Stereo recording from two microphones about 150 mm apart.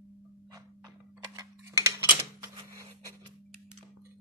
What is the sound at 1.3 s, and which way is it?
Tick-tock, 20° right (ahead or behind).